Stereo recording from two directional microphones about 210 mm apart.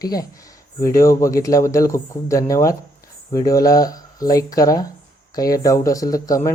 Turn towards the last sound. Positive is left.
turn(degrees=15)  # may be behind; listen again after turning